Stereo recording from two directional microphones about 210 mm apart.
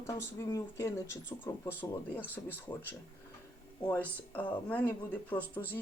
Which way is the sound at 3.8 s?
10° left (ahead or behind).